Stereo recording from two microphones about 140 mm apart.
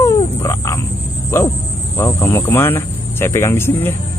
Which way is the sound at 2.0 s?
20° left (ahead or behind).